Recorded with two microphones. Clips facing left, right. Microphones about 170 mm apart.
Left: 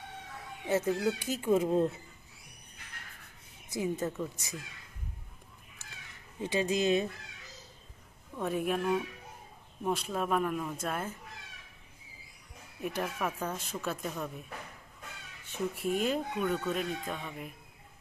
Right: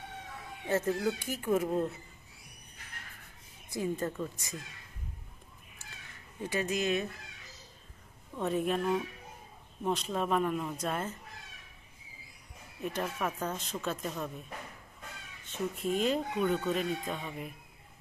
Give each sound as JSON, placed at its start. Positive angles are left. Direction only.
{"t": 0.7, "sound": "speech", "side_deg": 15}
{"t": 3.9, "sound": "speech", "side_deg": 5}
{"t": 6.4, "sound": "speech", "side_deg": 20}
{"t": 8.4, "sound": "speech", "side_deg": 10}
{"t": 12.8, "sound": "speech", "side_deg": 5}
{"t": 15.4, "sound": "speech", "side_deg": 10}